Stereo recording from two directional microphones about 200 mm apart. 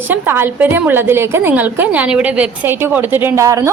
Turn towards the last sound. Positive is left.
turn(degrees=-15)  # may be behind; listen again after turning